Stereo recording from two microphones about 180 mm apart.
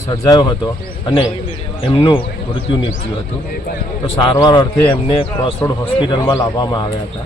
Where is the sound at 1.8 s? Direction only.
30° left (ahead or behind).